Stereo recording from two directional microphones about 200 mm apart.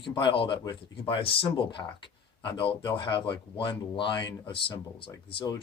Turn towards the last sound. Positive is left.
turn(degrees=25)  # may be behind; listen again after turning